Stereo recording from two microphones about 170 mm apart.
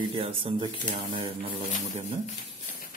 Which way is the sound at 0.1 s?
30° right (ahead or behind).